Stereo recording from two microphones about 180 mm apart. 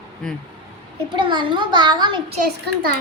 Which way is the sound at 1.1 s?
25° right (ahead or behind).